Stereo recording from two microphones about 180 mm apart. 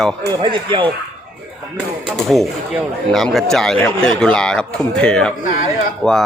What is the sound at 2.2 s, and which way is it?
A man's voice, centre (ahead or behind).